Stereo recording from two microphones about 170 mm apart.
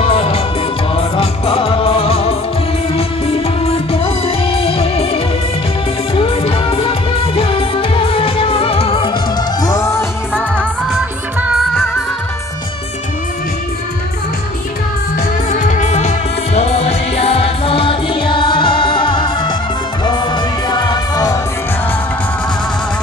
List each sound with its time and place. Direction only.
0.0 s music: 35° left (ahead or behind)
9.6 s music: 20° left (ahead or behind)
10.9 s music: centre (ahead or behind)
15.1 s music: 50° left (ahead or behind); by 21.4 s 20° left (ahead or behind)